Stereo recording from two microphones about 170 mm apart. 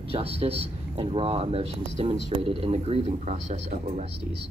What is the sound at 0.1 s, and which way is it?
Speech, 35° right (ahead or behind).